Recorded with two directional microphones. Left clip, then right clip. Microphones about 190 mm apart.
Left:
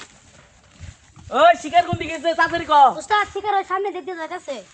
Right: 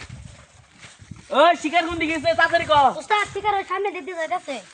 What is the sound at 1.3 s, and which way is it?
Speech, 25° left (ahead or behind).